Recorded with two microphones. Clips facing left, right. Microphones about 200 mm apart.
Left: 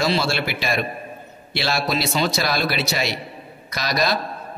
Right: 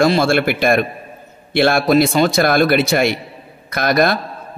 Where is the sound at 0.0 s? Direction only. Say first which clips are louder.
Right 8 dB; 50° right (ahead or behind).